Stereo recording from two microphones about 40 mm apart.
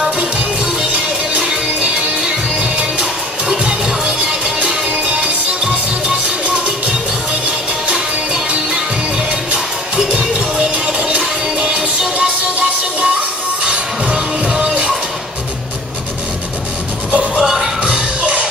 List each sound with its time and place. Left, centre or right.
2.2 s music: right
9.5 s music: right
17.4 s music: centre
17.8 s music: right